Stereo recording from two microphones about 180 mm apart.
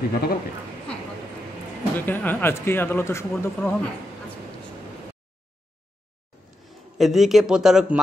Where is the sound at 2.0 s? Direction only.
10° left (ahead or behind).